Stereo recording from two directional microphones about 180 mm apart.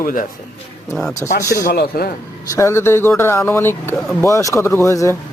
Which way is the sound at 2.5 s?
15° left (ahead or behind).